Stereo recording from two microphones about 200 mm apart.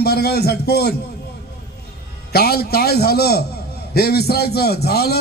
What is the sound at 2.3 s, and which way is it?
A man's voice, 50° left (ahead or behind).